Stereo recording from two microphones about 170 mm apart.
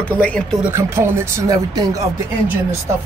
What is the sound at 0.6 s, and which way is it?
Speech, 15° right (ahead or behind).